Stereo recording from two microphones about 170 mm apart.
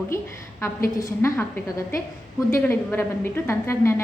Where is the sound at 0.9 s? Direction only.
15° left (ahead or behind).